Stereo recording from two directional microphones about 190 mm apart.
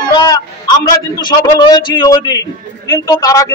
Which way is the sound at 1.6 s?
25° left (ahead or behind).